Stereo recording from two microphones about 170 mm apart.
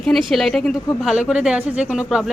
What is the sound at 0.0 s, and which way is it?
A woman's voice, centre (ahead or behind).